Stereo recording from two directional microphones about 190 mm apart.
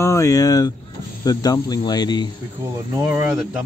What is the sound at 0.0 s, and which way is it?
Speech, 15° left (ahead or behind).